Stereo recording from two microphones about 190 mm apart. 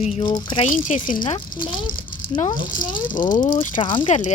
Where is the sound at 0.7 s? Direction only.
45° left (ahead or behind).